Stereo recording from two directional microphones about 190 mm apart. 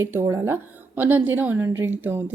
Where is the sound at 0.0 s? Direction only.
15° right (ahead or behind).